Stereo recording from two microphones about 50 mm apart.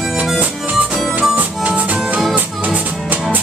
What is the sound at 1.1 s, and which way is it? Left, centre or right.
Music, right.